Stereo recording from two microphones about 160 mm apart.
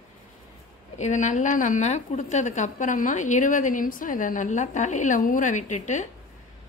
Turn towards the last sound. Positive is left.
turn(degrees=50)  # may be behind; listen again after turning